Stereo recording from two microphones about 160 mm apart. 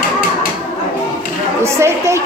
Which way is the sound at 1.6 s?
15° right (ahead or behind).